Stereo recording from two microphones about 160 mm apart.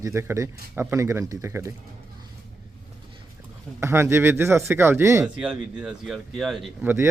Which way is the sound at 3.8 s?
15° right (ahead or behind).